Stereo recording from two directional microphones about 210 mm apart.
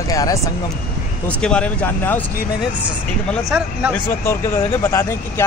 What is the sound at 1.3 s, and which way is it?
Speech, 5° left (ahead or behind).